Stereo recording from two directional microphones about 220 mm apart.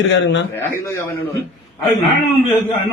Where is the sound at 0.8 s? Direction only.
10° left (ahead or behind).